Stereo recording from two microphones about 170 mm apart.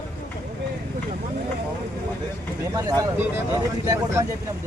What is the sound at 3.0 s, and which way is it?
Speech, 15° right (ahead or behind).